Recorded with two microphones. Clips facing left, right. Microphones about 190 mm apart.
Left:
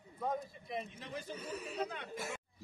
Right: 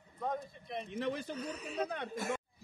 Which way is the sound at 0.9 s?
70° right (ahead or behind).